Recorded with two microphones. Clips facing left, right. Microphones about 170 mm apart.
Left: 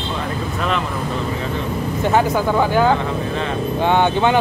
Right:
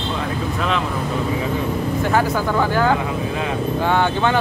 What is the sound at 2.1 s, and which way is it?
Speech, 15° left (ahead or behind).